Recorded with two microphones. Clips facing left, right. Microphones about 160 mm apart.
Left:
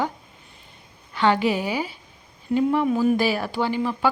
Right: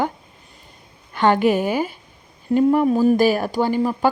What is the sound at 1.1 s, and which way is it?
Speech, 50° right (ahead or behind).